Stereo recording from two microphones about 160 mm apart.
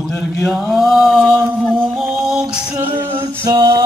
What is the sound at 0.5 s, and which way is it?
Chant, centre (ahead or behind).